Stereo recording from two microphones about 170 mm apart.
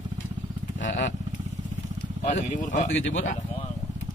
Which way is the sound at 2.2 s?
50° left (ahead or behind).